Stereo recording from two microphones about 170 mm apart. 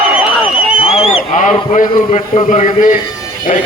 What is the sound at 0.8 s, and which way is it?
A man's voice, 35° left (ahead or behind).